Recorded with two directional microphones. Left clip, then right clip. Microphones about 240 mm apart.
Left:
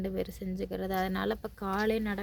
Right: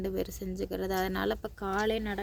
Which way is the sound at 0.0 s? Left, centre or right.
Centre.